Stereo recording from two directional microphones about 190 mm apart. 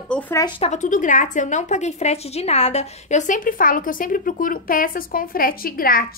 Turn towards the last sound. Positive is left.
turn(degrees=50)  # may be behind; listen again after turning